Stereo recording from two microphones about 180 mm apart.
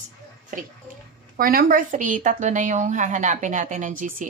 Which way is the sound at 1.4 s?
55° right (ahead or behind).